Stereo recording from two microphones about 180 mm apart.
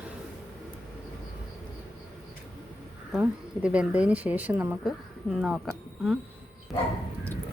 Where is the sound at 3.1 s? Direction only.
5° right (ahead or behind).